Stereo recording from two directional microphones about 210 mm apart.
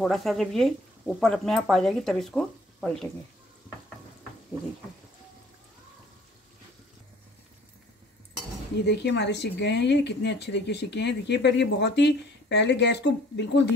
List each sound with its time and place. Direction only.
0.0 s speech: centre (ahead or behind)
8.8 s speech: 55° left (ahead or behind)